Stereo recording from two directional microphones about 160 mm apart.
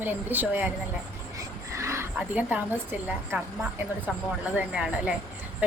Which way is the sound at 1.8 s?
15° right (ahead or behind).